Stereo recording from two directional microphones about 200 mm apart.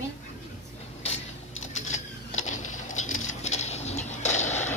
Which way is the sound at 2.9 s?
90° left.